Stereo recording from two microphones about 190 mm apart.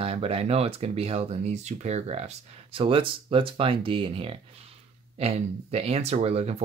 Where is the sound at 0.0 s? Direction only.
30° right (ahead or behind).